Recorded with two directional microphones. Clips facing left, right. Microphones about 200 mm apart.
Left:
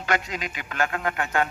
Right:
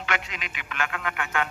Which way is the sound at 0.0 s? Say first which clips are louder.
Left 5 dB; 40° left (ahead or behind).